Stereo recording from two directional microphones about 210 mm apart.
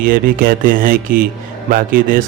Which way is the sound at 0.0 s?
40° right (ahead or behind).